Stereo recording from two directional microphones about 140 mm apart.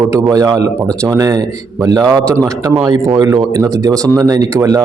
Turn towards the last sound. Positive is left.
turn(degrees=-25)  # may be behind; listen again after turning